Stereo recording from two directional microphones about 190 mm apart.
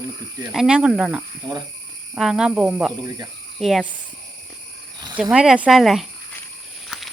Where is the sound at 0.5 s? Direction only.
5° right (ahead or behind).